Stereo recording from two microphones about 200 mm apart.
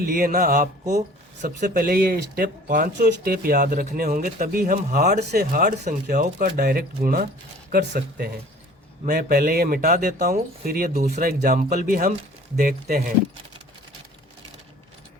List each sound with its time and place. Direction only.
0.0 s speech: 45° right (ahead or behind)